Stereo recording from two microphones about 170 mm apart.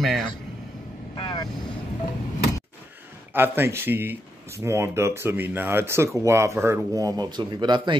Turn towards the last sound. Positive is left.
turn(degrees=-25)  # may be behind; listen again after turning